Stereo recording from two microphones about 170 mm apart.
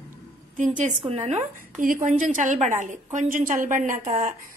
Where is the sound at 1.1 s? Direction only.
40° right (ahead or behind).